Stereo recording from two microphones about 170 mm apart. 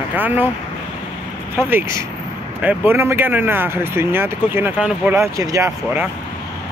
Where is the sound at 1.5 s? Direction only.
15° right (ahead or behind).